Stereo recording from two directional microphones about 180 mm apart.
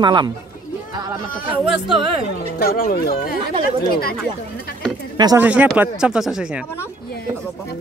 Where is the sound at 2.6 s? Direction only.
55° left (ahead or behind).